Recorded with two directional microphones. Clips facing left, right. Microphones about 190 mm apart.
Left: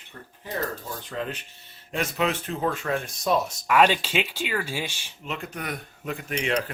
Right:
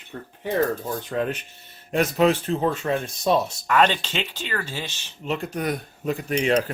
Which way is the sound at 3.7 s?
10° left (ahead or behind).